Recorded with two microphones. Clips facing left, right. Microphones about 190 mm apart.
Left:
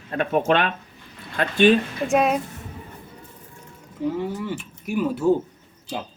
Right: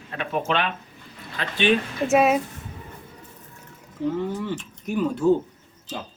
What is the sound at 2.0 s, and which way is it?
Speech, 5° right (ahead or behind).